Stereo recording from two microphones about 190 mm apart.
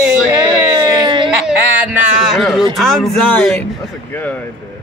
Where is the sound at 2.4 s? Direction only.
Centre (ahead or behind).